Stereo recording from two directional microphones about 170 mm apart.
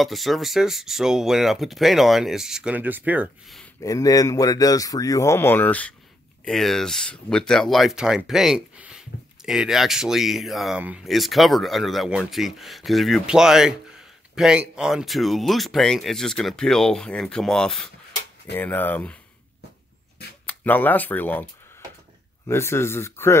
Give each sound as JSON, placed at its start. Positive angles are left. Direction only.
{"t": 0.0, "sound": "speech", "side_deg": 0}
{"t": 3.8, "sound": "speech", "side_deg": 20}
{"t": 20.4, "sound": "speech", "side_deg": 10}
{"t": 22.5, "sound": "speech", "side_deg": 15}